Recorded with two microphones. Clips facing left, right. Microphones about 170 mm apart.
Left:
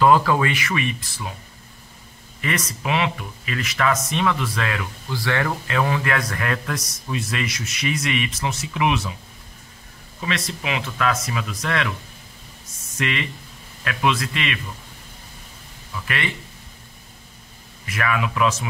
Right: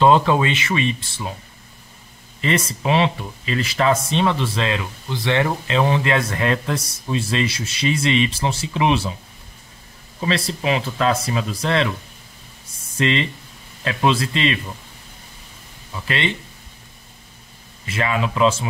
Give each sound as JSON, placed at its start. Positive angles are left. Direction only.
{"t": 0.0, "sound": "speech", "side_deg": -25}
{"t": 2.4, "sound": "speech", "side_deg": -30}
{"t": 10.2, "sound": "speech", "side_deg": -30}
{"t": 12.9, "sound": "speech", "side_deg": -30}
{"t": 15.9, "sound": "speech", "side_deg": -25}
{"t": 17.8, "sound": "speech", "side_deg": -25}